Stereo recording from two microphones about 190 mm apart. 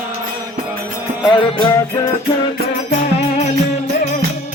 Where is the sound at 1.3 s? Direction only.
20° left (ahead or behind).